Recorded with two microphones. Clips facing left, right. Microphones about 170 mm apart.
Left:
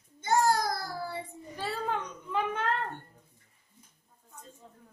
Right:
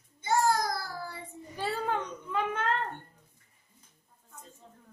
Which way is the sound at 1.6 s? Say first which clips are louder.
Right 2 dB; centre (ahead or behind).